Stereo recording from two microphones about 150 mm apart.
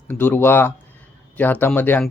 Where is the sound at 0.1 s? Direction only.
15° left (ahead or behind).